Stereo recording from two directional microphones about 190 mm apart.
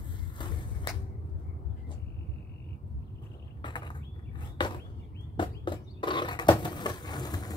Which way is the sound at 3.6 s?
25° left (ahead or behind).